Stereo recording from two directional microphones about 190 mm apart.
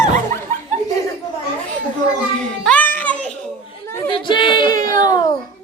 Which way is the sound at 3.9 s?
20° left (ahead or behind).